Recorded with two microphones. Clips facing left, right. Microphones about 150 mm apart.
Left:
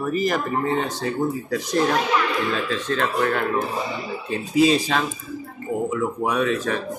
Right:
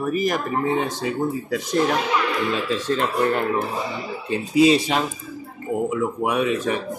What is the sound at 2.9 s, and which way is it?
Speech, 20° right (ahead or behind).